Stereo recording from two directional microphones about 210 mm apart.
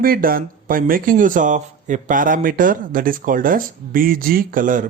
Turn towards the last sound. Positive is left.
turn(degrees=-40)  # may be behind; listen again after turning